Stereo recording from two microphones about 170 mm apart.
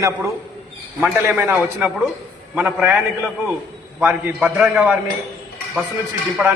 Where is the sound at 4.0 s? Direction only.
10° right (ahead or behind).